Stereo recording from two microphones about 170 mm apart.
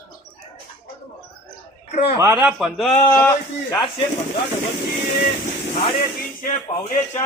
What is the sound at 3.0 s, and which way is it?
Speech, 15° left (ahead or behind).